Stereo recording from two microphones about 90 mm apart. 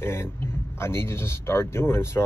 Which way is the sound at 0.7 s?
30° left (ahead or behind).